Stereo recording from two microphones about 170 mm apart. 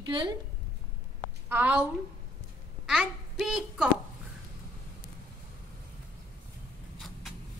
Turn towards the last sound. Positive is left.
turn(degrees=0)  # may be behind; listen again after turning